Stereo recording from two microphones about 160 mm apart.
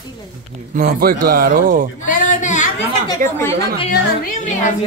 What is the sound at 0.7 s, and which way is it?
Speech, 65° right (ahead or behind).